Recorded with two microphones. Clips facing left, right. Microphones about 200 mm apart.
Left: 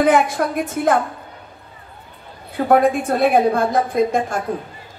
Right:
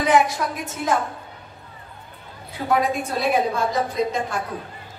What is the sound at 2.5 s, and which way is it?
A woman's voice, 55° left (ahead or behind).